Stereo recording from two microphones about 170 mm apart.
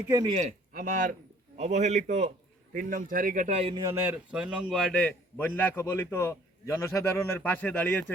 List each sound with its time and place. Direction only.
0.1 s a man's voice: 25° right (ahead or behind)
0.3 s speech: 45° right (ahead or behind)
2.7 s speech: 55° right (ahead or behind); by 3.8 s 35° right (ahead or behind)
3.8 s a man's voice: 10° right (ahead or behind); by 8.1 s 10° left (ahead or behind)